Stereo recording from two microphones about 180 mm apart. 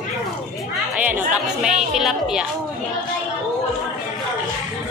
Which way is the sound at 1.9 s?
Centre (ahead or behind).